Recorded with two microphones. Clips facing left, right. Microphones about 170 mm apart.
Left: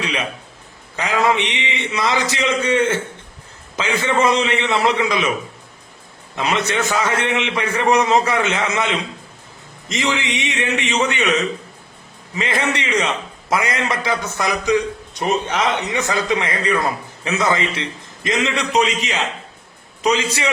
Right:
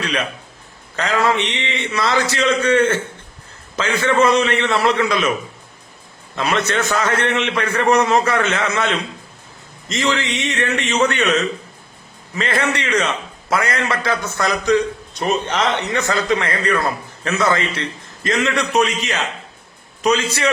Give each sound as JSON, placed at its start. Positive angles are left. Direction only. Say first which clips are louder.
{"t": 0.0, "sound": "music", "louder": "right 1 dB", "side_deg": 15}
{"t": 0.9, "sound": "a man's voice", "louder": "even", "side_deg": 15}
{"t": 6.3, "sound": "a man's voice", "louder": "right 1 dB", "side_deg": 15}